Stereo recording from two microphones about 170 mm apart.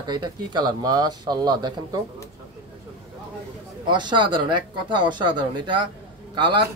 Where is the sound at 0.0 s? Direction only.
25° right (ahead or behind).